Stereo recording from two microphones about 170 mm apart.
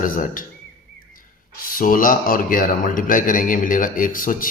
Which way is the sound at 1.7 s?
55° left (ahead or behind).